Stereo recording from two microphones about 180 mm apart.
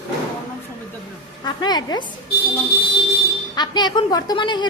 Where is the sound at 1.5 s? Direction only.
25° left (ahead or behind).